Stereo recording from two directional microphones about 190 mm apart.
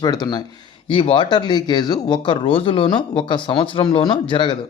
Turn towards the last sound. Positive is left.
turn(degrees=25)  # may be behind; listen again after turning